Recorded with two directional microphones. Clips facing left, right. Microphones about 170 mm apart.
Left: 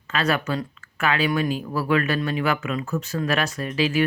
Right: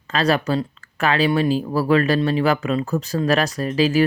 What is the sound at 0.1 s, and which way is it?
Speech, 35° right (ahead or behind).